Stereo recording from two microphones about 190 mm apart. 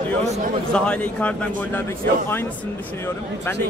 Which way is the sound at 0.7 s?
5° left (ahead or behind).